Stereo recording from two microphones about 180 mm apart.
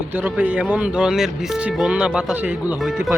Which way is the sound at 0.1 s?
10° right (ahead or behind).